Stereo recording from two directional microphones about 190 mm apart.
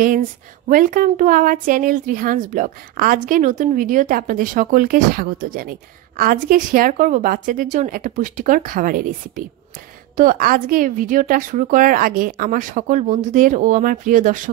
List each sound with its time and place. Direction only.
0.7 s a woman's voice: 45° right (ahead or behind)